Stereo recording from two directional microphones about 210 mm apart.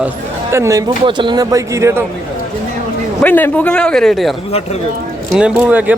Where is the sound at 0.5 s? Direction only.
15° right (ahead or behind).